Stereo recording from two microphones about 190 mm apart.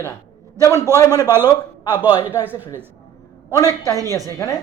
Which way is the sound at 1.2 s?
10° right (ahead or behind).